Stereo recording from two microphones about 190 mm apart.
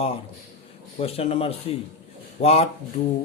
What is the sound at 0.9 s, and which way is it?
Speech, 30° left (ahead or behind).